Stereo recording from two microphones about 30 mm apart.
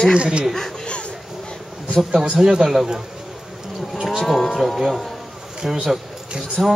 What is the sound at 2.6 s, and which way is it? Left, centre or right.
Speech, centre.